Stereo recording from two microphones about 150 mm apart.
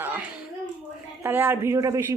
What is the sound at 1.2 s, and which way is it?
Speech, 15° right (ahead or behind).